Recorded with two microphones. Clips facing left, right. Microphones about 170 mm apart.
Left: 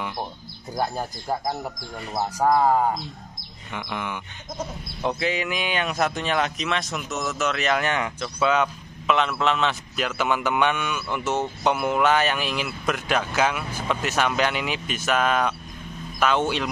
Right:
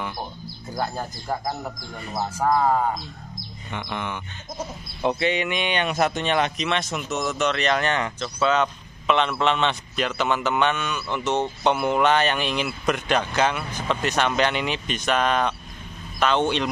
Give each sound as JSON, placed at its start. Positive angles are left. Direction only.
{"t": 0.7, "sound": "speech", "side_deg": 10}